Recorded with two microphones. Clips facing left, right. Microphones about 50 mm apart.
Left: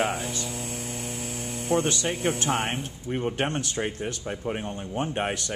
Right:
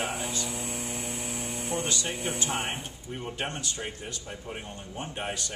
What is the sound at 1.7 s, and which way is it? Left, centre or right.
Speech, left.